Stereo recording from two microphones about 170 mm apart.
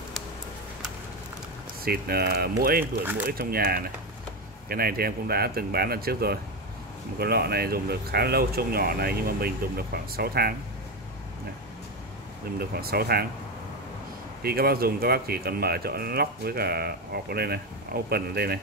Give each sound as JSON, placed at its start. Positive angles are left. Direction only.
{"t": 1.9, "sound": "speech", "side_deg": -65}
{"t": 2.8, "sound": "speech", "side_deg": -10}
{"t": 3.3, "sound": "speech", "side_deg": -60}
{"t": 12.5, "sound": "speech", "side_deg": -65}
{"t": 14.4, "sound": "speech", "side_deg": -65}